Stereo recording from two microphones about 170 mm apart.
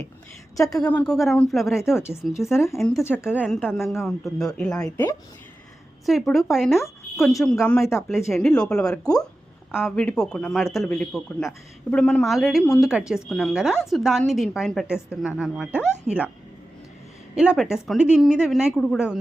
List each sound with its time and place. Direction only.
0.5 s speech: 20° left (ahead or behind)
0.9 s a woman's voice: 5° left (ahead or behind)
3.0 s a woman's voice: 15° left (ahead or behind)
3.2 s a woman's voice: 5° right (ahead or behind)
6.1 s a woman's voice: centre (ahead or behind)
17.3 s a woman's voice: 5° right (ahead or behind)